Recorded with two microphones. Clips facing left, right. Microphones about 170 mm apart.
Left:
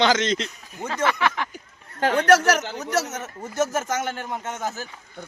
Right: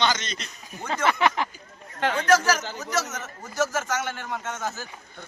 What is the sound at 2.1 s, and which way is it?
Speech, 70° left (ahead or behind).